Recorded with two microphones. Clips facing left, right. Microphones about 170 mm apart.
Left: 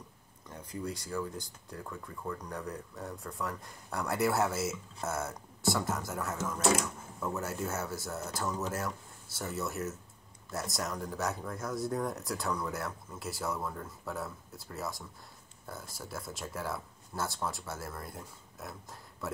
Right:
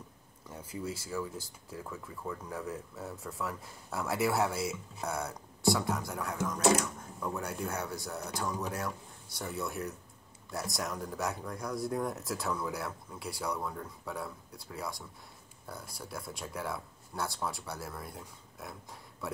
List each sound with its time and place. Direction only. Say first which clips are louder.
0.5 s speech: even; 10° right (ahead or behind)